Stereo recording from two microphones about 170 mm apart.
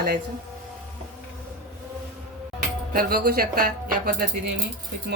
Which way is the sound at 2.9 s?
60° right (ahead or behind).